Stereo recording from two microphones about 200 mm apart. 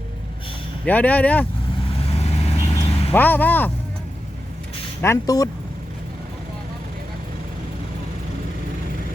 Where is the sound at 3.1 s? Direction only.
10° left (ahead or behind).